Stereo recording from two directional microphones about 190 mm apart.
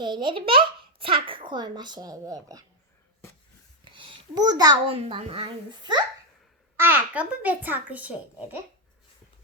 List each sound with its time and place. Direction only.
0.0 s a child's voice: 25° right (ahead or behind)
3.9 s a child's voice: 25° right (ahead or behind)
4.9 s a child's voice: 30° right (ahead or behind)
6.7 s a child's voice: 10° right (ahead or behind)